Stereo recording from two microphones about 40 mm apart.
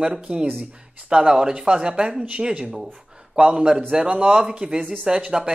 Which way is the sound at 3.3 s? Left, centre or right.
Right.